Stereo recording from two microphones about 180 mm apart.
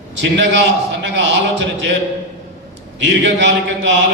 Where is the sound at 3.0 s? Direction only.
90° right.